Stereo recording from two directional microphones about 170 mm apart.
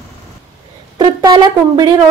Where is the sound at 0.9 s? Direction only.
25° right (ahead or behind).